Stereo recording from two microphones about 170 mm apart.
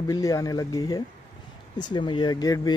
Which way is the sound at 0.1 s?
20° left (ahead or behind).